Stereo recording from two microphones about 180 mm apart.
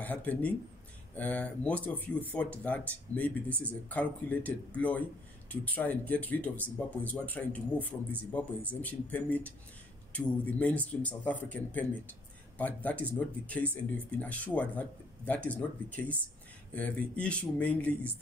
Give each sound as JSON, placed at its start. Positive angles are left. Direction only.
{"t": 0.0, "sound": "speech", "side_deg": 10}
{"t": 3.1, "sound": "speech", "side_deg": -20}
{"t": 3.6, "sound": "speech", "side_deg": 10}